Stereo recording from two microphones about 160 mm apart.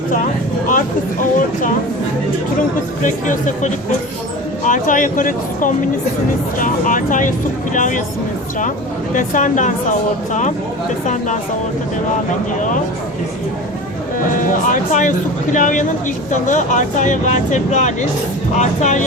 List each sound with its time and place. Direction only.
0.7 s speech: 55° left (ahead or behind)
3.0 s speech: 55° left (ahead or behind)
9.1 s speech: 50° left (ahead or behind)
11.0 s speech: 50° left (ahead or behind)
14.7 s speech: 55° left (ahead or behind)